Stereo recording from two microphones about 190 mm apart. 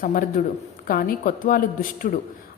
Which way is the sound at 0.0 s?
45° left (ahead or behind).